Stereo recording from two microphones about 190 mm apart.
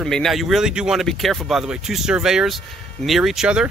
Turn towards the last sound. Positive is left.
turn(degrees=-5)  # may be behind; listen again after turning